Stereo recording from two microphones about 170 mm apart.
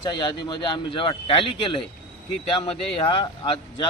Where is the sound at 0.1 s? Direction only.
25° left (ahead or behind).